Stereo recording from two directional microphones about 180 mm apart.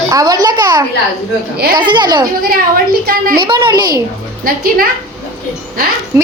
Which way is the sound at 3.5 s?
20° right (ahead or behind).